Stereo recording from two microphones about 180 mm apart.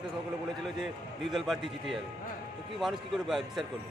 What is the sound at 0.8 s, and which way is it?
Speech, centre (ahead or behind).